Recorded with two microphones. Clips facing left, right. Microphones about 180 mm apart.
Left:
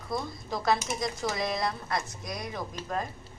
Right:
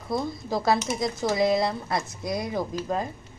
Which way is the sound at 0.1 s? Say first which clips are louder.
Right 6 dB; 30° right (ahead or behind).